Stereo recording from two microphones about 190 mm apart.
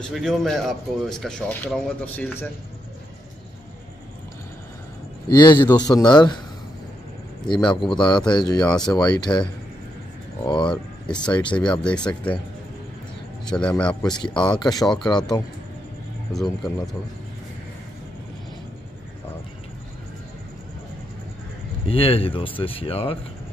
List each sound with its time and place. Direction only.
0.1 s speech: centre (ahead or behind)
5.3 s speech: 20° left (ahead or behind)
7.4 s speech: 25° left (ahead or behind)
8.6 s speech: 5° left (ahead or behind)
8.9 s speech: 20° left (ahead or behind)
10.7 s speech: 5° left (ahead or behind)
11.2 s speech: 25° left (ahead or behind)
11.5 s speech: 5° left (ahead or behind)
13.6 s speech: 5° left (ahead or behind)
14.0 s speech: 20° left (ahead or behind)
14.9 s speech: centre (ahead or behind)
21.8 s speech: 30° left (ahead or behind)